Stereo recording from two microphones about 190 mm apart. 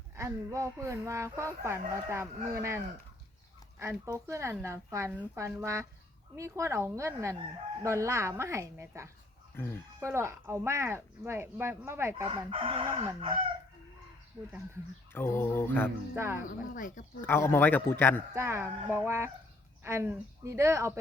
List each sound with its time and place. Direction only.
0.2 s speech: 15° right (ahead or behind)
9.6 s a man's voice: 10° left (ahead or behind)
10.0 s speech: 15° right (ahead or behind)
12.5 s crowing: 30° right (ahead or behind)
15.1 s a man's voice: 10° left (ahead or behind)
16.1 s speech: 15° right (ahead or behind)
16.5 s speech: 45° left (ahead or behind)
17.2 s a man's voice: 10° left (ahead or behind)
18.3 s speech: 15° right (ahead or behind)